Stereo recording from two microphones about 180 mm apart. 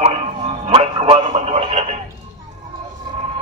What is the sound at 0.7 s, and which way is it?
Music, 30° right (ahead or behind).